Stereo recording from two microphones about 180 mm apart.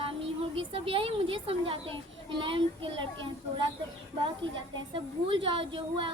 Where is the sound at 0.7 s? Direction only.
30° right (ahead or behind).